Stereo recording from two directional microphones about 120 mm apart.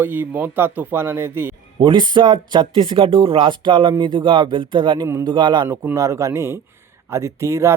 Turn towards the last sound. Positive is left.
turn(degrees=-25)  # may be behind; listen again after turning